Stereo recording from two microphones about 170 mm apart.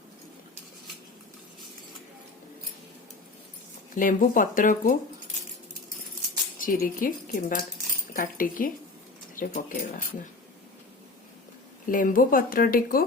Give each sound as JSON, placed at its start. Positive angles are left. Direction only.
{"t": 3.9, "sound": "speech", "side_deg": 50}
{"t": 6.6, "sound": "speech", "side_deg": 55}
{"t": 11.9, "sound": "a woman's voice", "side_deg": 55}